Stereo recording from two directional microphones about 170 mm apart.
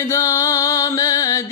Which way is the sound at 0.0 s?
15° left (ahead or behind).